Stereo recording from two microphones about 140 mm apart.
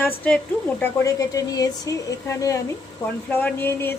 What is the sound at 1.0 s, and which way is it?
A woman's voice, 25° left (ahead or behind).